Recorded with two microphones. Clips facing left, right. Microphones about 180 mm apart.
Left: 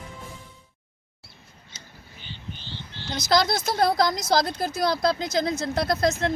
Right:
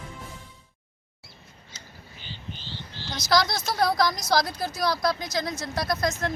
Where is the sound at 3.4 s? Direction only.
50° left (ahead or behind).